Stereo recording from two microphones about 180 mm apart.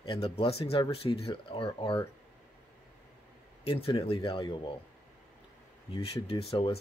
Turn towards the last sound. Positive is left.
turn(degrees=30)  # may be behind; listen again after turning